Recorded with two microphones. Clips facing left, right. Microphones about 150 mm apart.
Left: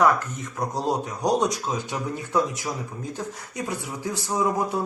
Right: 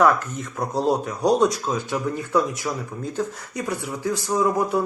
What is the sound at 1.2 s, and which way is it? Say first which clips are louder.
Speech: right 4 dB; 15° left (ahead or behind).